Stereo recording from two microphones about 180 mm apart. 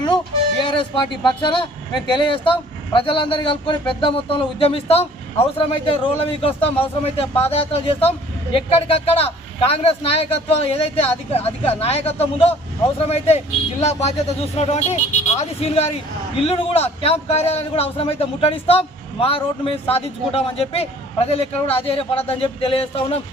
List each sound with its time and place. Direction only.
1.2 s a man's voice: 25° left (ahead or behind)